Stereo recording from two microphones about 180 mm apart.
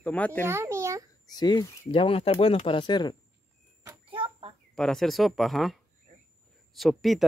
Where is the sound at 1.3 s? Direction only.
25° left (ahead or behind).